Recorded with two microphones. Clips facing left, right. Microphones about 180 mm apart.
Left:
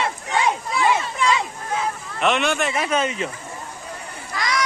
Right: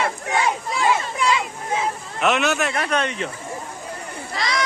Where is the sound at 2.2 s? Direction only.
Centre (ahead or behind).